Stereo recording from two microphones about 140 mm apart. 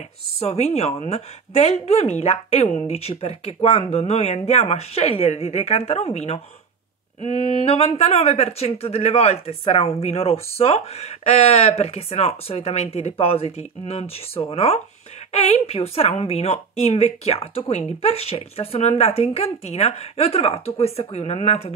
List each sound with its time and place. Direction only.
0.4 s speech: 50° left (ahead or behind)